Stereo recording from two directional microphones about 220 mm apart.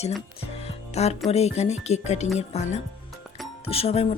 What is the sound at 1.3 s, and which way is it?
Speech, 30° left (ahead or behind).